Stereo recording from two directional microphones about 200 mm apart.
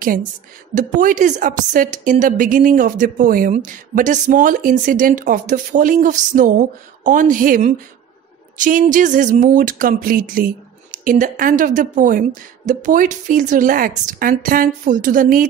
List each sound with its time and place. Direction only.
0.0 s a woman's voice: 45° right (ahead or behind)